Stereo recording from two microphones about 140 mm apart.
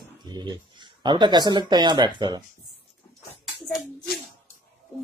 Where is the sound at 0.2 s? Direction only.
30° right (ahead or behind).